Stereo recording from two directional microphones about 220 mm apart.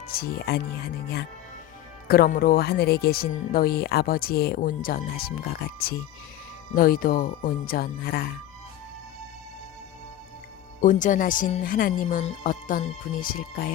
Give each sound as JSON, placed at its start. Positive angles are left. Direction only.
{"t": 0.1, "sound": "speech", "side_deg": 45}
{"t": 2.0, "sound": "speech", "side_deg": 45}
{"t": 10.8, "sound": "speech", "side_deg": 35}